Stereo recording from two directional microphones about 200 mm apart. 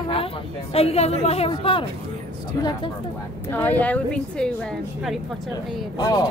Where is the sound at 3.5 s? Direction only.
10° left (ahead or behind).